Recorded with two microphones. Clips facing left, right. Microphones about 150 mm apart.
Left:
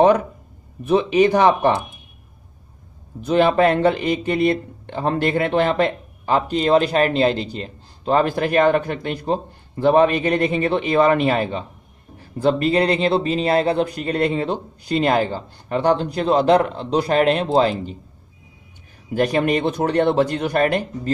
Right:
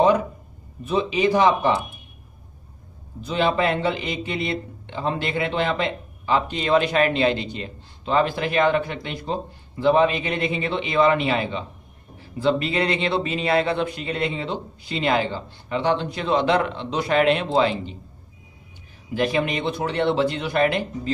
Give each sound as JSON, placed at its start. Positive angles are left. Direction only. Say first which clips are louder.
{"t": 0.8, "sound": "speech", "louder": "left 5 dB", "side_deg": 60}
{"t": 3.3, "sound": "speech", "louder": "left 6 dB", "side_deg": 50}
{"t": 19.1, "sound": "speech", "louder": "left 4 dB", "side_deg": 45}